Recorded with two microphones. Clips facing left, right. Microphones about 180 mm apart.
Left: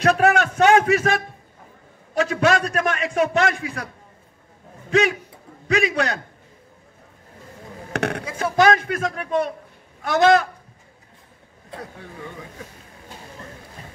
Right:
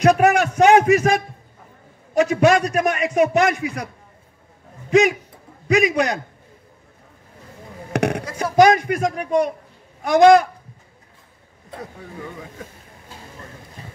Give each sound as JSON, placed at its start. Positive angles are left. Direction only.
{"t": 0.0, "sound": "a man's voice", "side_deg": -15}
{"t": 5.7, "sound": "a man's voice", "side_deg": -15}
{"t": 7.9, "sound": "a sound", "side_deg": -15}
{"t": 8.4, "sound": "a man's voice", "side_deg": -15}